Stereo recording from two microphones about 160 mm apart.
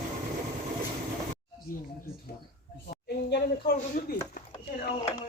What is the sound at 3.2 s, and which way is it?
Speech, 90° left.